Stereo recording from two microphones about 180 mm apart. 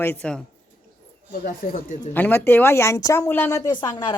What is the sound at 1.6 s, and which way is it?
Speech, 45° left (ahead or behind).